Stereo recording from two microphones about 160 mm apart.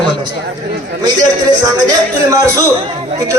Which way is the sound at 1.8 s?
20° right (ahead or behind).